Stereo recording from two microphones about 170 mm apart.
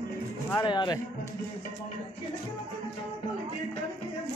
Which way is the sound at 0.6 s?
25° left (ahead or behind).